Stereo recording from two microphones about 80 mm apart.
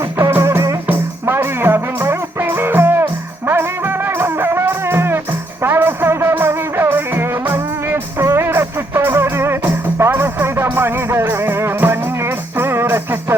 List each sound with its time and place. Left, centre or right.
0.2 s music: right